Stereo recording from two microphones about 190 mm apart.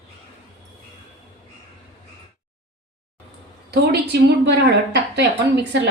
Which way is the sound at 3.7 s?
60° right (ahead or behind).